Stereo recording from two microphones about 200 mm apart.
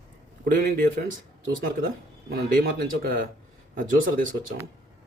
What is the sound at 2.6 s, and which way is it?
Speech, 45° right (ahead or behind).